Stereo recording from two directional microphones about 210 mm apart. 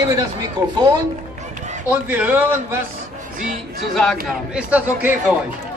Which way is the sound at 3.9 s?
Centre (ahead or behind).